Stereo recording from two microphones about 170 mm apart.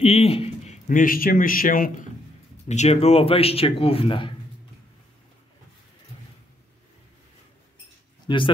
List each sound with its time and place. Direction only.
0.0 s a sound: 35° left (ahead or behind)
0.8 s speech: 55° left (ahead or behind)
2.7 s speech: 40° left (ahead or behind)
8.3 s speech: 30° left (ahead or behind)